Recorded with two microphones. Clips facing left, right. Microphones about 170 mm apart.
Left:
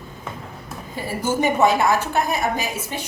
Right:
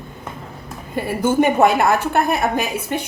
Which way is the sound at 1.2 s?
55° right (ahead or behind).